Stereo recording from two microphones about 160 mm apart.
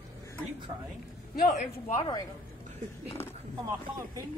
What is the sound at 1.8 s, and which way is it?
Speech, 30° left (ahead or behind).